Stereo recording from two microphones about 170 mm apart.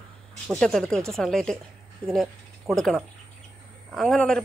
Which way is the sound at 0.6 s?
5° left (ahead or behind).